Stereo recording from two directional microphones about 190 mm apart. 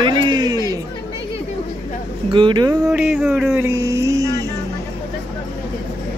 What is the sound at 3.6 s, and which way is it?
Music, 15° right (ahead or behind).